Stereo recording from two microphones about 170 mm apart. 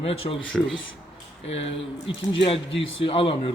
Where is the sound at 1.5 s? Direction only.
35° left (ahead or behind).